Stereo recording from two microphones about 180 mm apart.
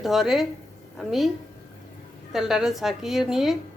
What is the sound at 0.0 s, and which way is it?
A woman's voice, centre (ahead or behind).